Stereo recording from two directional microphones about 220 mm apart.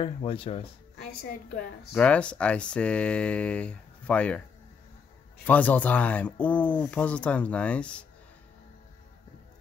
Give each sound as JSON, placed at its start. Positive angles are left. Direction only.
{"t": 0.0, "sound": "speech", "side_deg": 25}
{"t": 0.9, "sound": "a woman's voice", "side_deg": 45}
{"t": 2.0, "sound": "speech", "side_deg": 5}
{"t": 5.5, "sound": "speech", "side_deg": 5}